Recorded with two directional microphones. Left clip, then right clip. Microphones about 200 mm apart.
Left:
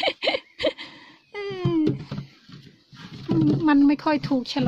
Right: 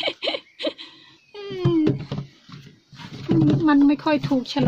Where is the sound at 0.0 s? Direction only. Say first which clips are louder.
Left 2 dB; 40° left (ahead or behind).